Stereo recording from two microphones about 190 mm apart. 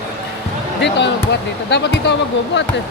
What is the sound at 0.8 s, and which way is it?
Speech, 65° left (ahead or behind).